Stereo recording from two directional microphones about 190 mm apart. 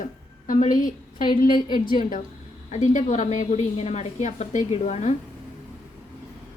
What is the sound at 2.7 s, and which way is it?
A woman's voice, 35° left (ahead or behind).